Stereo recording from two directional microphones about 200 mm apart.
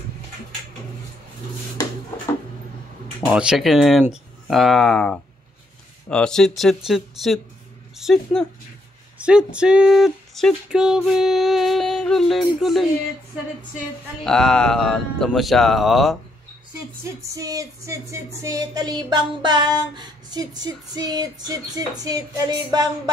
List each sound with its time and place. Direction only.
3.3 s speech: 5° right (ahead or behind)
14.2 s speech: 5° left (ahead or behind)
17.4 s a sound: 15° right (ahead or behind)